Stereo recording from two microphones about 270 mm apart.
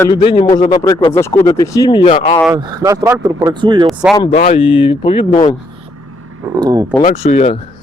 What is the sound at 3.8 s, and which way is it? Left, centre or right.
Speech, centre.